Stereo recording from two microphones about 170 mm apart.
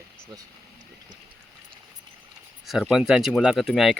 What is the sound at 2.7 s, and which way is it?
Speech, centre (ahead or behind).